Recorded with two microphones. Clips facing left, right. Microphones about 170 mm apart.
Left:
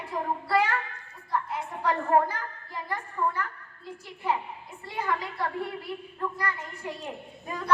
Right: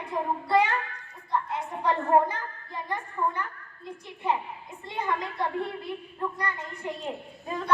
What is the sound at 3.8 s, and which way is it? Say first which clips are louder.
A woman's voice: right 1 dB; 20° right (ahead or behind).